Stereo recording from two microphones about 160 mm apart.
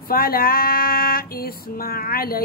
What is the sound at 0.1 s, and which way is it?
Female singing, 70° left (ahead or behind).